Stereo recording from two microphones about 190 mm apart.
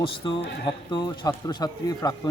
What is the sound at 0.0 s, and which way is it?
Speech, 25° left (ahead or behind).